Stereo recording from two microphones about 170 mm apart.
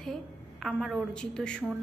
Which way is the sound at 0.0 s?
Centre (ahead or behind).